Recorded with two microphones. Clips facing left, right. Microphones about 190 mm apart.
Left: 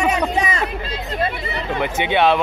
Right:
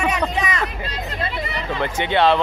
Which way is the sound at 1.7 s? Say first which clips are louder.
Left 1 dB; 15° left (ahead or behind).